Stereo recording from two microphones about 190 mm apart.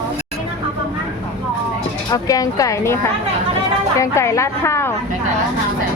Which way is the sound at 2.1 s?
20° left (ahead or behind).